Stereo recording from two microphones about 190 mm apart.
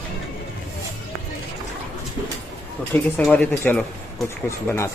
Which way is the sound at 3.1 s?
10° left (ahead or behind).